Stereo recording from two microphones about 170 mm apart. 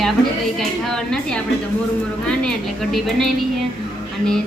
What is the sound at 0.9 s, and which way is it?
A woman's voice, 5° left (ahead or behind).